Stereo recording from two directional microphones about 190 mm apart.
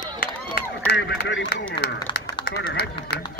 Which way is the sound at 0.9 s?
65° left (ahead or behind).